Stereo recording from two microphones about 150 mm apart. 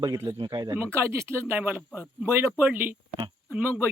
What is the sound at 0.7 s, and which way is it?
A man's voice, 15° right (ahead or behind).